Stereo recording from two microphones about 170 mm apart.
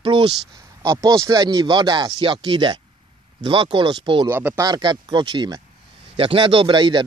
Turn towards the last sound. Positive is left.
turn(degrees=-30)  # may be behind; listen again after turning